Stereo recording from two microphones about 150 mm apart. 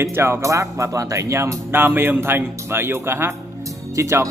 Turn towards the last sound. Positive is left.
turn(degrees=-20)  # may be behind; listen again after turning